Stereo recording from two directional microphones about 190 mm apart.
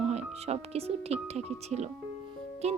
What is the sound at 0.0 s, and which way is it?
Speech, 35° right (ahead or behind).